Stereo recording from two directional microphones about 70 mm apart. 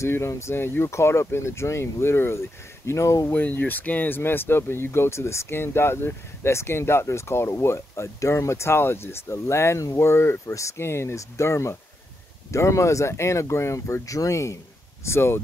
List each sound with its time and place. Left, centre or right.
0.0 s speech: left
3.3 s speech: left